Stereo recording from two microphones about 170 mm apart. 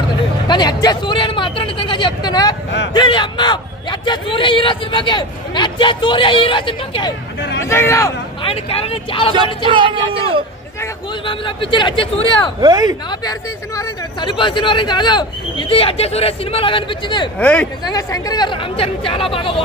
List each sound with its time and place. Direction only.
0.5 s speech: 25° left (ahead or behind)
7.6 s speech: 15° left (ahead or behind)
8.4 s speech: 30° left (ahead or behind)
9.8 s speech: 30° right (ahead or behind)
11.2 s speech: 30° left (ahead or behind)
12.5 s speech: 25° right (ahead or behind)
13.2 s speech: 20° left (ahead or behind)
17.4 s speech: 10° left (ahead or behind)
17.8 s speech: 20° left (ahead or behind)